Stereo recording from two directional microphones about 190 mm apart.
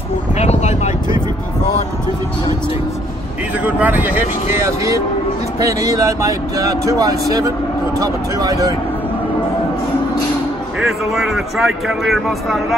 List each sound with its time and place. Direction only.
0.4 s vehicle: 35° left (ahead or behind)
3.6 s speech: 10° right (ahead or behind)
10.8 s speech: centre (ahead or behind)